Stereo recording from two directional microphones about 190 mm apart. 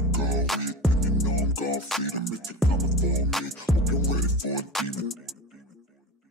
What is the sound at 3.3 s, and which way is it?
Music, centre (ahead or behind).